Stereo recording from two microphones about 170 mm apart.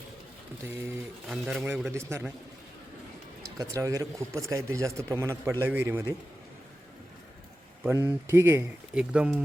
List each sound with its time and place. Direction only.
1.3 s a man's voice: 5° right (ahead or behind)
1.9 s a man's voice: 15° right (ahead or behind)
3.6 s a man's voice: 20° right (ahead or behind)
7.9 s a man's voice: 15° right (ahead or behind)